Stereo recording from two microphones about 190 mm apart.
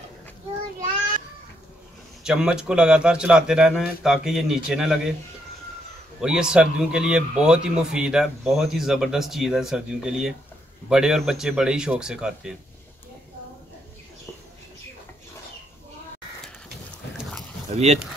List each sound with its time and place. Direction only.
2.2 s a man's voice: 5° right (ahead or behind)
6.2 s a man's voice: 5° right (ahead or behind)
17.6 s a sound: 35° right (ahead or behind)